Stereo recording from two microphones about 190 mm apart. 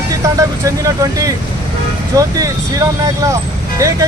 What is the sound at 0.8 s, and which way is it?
Speech, 20° right (ahead or behind).